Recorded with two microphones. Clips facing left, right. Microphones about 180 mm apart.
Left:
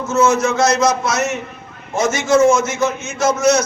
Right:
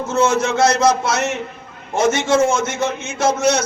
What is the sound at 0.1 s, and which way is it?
A man's voice, 30° right (ahead or behind).